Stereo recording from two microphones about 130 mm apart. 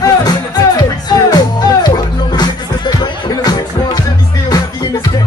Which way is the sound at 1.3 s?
30° left (ahead or behind).